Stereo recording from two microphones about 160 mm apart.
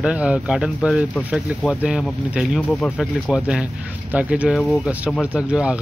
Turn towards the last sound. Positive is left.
turn(degrees=-5)  # may be behind; listen again after turning